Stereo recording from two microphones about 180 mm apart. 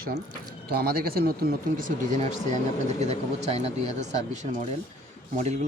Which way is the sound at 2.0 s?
45° right (ahead or behind).